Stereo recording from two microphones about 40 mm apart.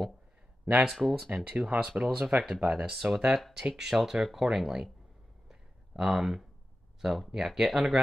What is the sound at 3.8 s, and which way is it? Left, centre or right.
Speech, centre.